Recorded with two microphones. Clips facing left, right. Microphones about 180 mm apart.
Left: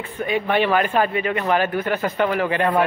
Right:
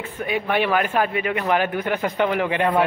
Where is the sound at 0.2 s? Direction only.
10° right (ahead or behind).